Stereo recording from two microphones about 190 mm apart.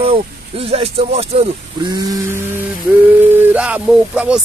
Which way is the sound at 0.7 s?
30° right (ahead or behind).